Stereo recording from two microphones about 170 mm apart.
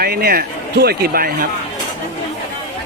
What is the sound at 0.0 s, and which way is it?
Speech, 65° right (ahead or behind).